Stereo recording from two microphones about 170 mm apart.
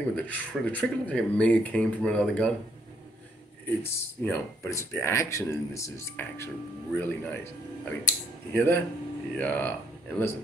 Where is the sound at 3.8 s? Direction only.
15° left (ahead or behind).